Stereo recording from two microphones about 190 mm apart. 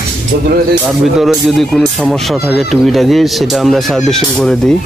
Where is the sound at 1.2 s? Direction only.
Centre (ahead or behind).